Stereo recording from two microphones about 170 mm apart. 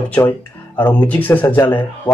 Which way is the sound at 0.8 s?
10° left (ahead or behind).